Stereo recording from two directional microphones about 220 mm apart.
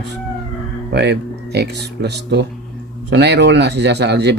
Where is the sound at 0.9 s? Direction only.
50° right (ahead or behind).